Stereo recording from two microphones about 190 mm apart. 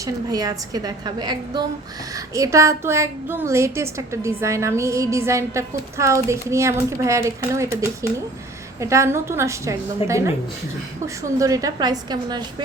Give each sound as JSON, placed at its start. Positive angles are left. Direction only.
{"t": 0.0, "sound": "a woman's voice", "side_deg": -20}